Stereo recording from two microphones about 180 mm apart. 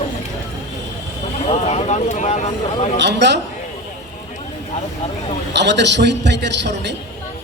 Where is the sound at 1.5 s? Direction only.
35° left (ahead or behind).